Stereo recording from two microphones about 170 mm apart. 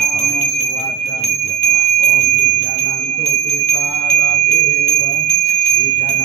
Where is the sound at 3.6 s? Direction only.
75° left (ahead or behind).